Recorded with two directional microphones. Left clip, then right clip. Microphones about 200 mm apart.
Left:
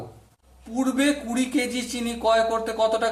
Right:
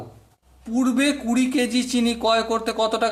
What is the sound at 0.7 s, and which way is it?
A man's voice, 35° right (ahead or behind).